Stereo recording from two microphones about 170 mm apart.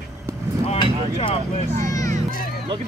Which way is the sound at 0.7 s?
30° left (ahead or behind).